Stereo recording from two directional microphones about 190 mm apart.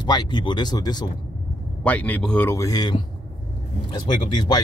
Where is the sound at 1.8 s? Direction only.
10° left (ahead or behind).